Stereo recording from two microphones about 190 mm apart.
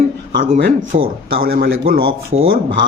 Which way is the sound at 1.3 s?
50° right (ahead or behind).